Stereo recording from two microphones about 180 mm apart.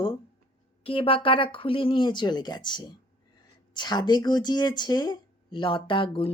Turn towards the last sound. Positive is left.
turn(degrees=30)  # may be behind; listen again after turning